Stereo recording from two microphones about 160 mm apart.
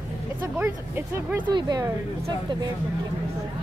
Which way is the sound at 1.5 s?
25° right (ahead or behind).